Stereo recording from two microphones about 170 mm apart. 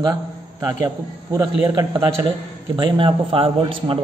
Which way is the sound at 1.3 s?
25° right (ahead or behind).